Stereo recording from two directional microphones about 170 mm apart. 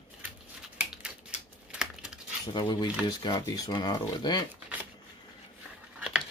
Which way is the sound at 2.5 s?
25° left (ahead or behind).